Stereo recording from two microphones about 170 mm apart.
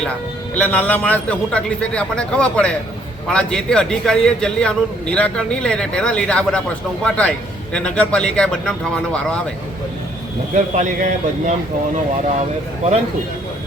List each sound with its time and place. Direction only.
0.5 s a man's voice: 10° left (ahead or behind)
10.5 s speech: 50° right (ahead or behind)